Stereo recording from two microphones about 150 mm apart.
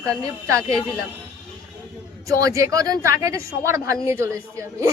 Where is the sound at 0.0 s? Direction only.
25° right (ahead or behind).